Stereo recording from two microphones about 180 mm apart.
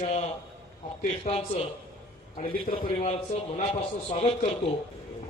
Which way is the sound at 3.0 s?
35° left (ahead or behind).